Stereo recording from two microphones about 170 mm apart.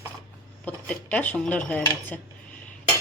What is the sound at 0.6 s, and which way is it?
Speech, 10° left (ahead or behind).